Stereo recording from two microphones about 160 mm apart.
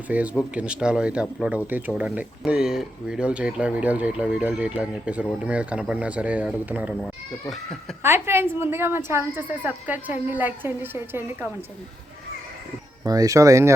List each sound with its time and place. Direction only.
0.1 s speech: 10° right (ahead or behind)
8.0 s speech: 15° right (ahead or behind)
13.1 s speech: 20° right (ahead or behind)